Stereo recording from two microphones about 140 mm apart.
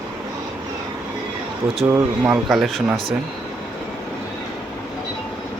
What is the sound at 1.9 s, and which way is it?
Speech, 15° right (ahead or behind).